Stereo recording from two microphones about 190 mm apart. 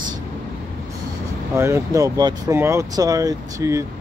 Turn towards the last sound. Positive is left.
turn(degrees=-15)  # may be behind; listen again after turning